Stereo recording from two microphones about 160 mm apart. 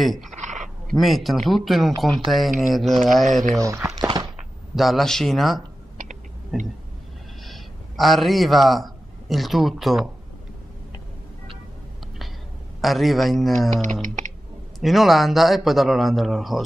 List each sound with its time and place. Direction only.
0.0 s speech: centre (ahead or behind)
0.4 s a sound: 50° right (ahead or behind)
0.9 s speech: centre (ahead or behind)
3.5 s speech: 20° right (ahead or behind)
3.9 s a sound: 25° right (ahead or behind)
4.7 s speech: centre (ahead or behind)
6.5 s a sound: centre (ahead or behind)
7.4 s a man's voice: centre (ahead or behind)
12.8 s speech: centre (ahead or behind)
14.8 s speech: centre (ahead or behind)